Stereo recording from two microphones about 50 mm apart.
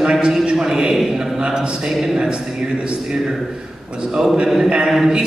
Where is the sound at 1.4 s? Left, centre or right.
Centre.